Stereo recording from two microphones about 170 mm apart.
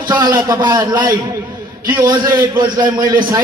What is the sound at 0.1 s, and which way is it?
A man's voice, 20° right (ahead or behind).